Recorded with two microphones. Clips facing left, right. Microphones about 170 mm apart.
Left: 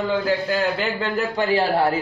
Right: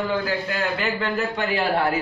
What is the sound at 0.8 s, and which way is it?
A man's voice, 30° left (ahead or behind).